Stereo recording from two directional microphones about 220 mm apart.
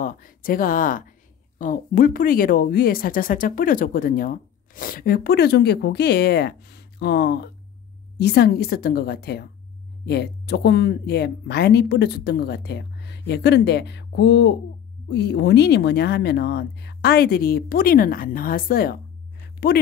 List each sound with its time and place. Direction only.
0.0 s speech: 40° left (ahead or behind)